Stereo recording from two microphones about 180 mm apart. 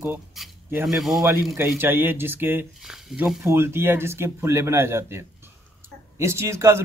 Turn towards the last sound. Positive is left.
turn(degrees=-15)  # may be behind; listen again after turning